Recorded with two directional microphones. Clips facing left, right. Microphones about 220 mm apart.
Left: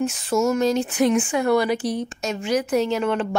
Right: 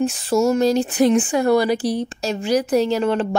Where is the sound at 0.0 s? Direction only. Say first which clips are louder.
Right 3 dB; 35° right (ahead or behind).